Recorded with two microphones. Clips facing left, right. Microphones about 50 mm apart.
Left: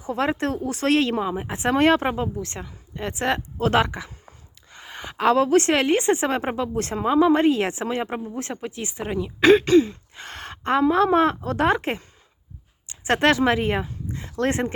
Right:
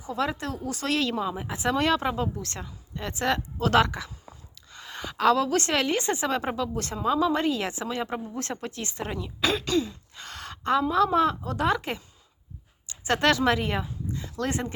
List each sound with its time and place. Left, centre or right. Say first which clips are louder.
0.0 s a woman's voice: left 5 dB; left
2.1 s a woman's voice: left 3 dB; left
8.2 s speech: left 3 dB; centre
9.4 s a woman's voice: left 11 dB; left
10.2 s a sound: left 2 dB; left
10.8 s a woman's voice: left 5 dB; left